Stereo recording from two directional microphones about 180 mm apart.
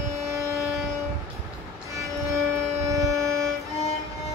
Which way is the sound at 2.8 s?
15° right (ahead or behind).